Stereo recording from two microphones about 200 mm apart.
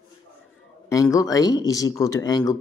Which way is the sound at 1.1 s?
15° left (ahead or behind).